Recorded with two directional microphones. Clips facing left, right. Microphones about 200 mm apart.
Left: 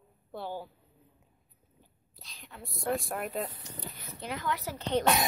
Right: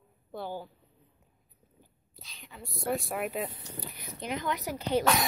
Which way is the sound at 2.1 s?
Centre (ahead or behind).